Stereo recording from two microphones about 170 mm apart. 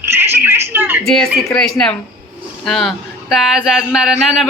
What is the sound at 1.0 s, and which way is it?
Speech, 5° left (ahead or behind).